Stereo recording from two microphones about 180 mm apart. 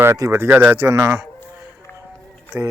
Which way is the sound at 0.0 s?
15° right (ahead or behind).